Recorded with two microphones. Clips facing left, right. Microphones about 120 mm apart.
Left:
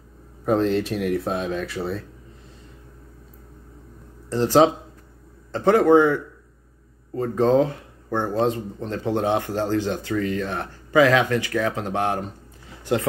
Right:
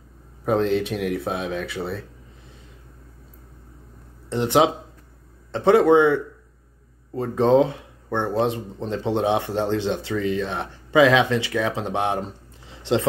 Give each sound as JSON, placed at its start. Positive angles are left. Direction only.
{"t": 0.5, "sound": "speech", "side_deg": 0}
{"t": 4.3, "sound": "speech", "side_deg": -20}
{"t": 7.2, "sound": "speech", "side_deg": -20}
{"t": 8.1, "sound": "speech", "side_deg": 10}
{"t": 8.4, "sound": "speech", "side_deg": -20}